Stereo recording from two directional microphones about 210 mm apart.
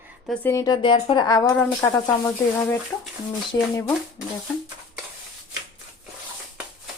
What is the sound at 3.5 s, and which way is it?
Speech, 15° left (ahead or behind).